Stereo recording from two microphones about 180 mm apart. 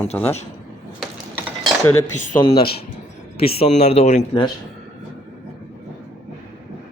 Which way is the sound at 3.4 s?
35° left (ahead or behind).